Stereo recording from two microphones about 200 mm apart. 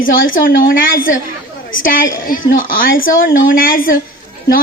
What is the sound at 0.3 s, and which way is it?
Speech, 45° left (ahead or behind).